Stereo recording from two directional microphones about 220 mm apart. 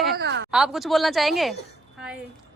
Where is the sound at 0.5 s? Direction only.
Centre (ahead or behind).